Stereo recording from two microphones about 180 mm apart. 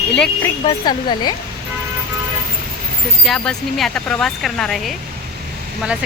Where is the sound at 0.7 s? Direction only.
25° left (ahead or behind).